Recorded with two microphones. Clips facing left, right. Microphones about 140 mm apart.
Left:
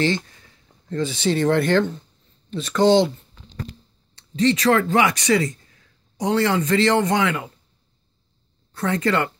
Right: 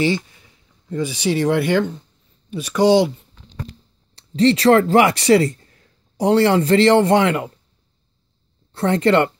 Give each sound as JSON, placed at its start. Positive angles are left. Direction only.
{"t": 0.0, "sound": "speech", "side_deg": -10}
{"t": 4.1, "sound": "speech", "side_deg": -30}
{"t": 8.7, "sound": "speech", "side_deg": -30}